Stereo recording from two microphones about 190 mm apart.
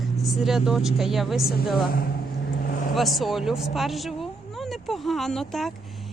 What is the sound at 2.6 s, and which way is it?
Vehicle, 50° left (ahead or behind).